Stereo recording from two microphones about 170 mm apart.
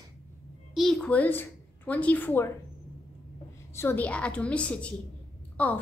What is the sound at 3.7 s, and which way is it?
A woman's voice, 15° left (ahead or behind).